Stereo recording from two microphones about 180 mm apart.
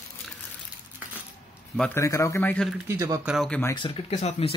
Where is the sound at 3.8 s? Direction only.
30° left (ahead or behind).